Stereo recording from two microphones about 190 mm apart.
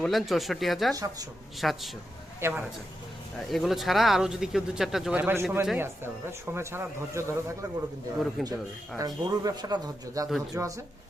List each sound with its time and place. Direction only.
0.0 s speech: centre (ahead or behind)
0.9 s speech: 20° right (ahead or behind)
1.6 s speech: centre (ahead or behind)
2.4 s speech: 10° right (ahead or behind)
3.4 s speech: centre (ahead or behind)
8.4 s speech: centre (ahead or behind)
9.0 s speech: 20° right (ahead or behind)